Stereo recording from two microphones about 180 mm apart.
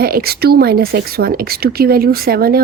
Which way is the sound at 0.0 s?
55° right (ahead or behind).